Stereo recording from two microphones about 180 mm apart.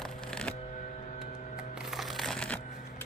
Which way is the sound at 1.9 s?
Centre (ahead or behind).